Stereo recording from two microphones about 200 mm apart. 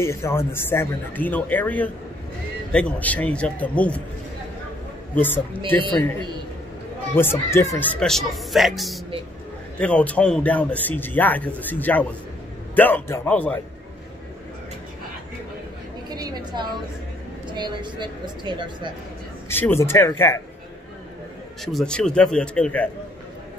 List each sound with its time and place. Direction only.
0.0 s a man's voice: 15° left (ahead or behind)
5.1 s a man's voice: 10° left (ahead or behind)
7.2 s a man's voice: 10° left (ahead or behind)
16.1 s a sound: 20° right (ahead or behind)
17.5 s speech: 20° right (ahead or behind)
19.5 s a man's voice: 10° left (ahead or behind)
21.7 s speech: 5° left (ahead or behind)